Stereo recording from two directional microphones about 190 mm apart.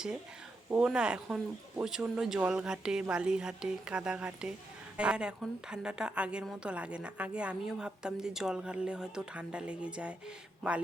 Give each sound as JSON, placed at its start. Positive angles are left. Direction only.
{"t": 0.7, "sound": "a woman's voice", "side_deg": -5}